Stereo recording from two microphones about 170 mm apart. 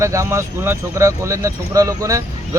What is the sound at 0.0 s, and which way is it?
Speech, 15° right (ahead or behind).